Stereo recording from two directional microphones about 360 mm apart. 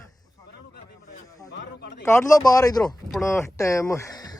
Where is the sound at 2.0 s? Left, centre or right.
Centre.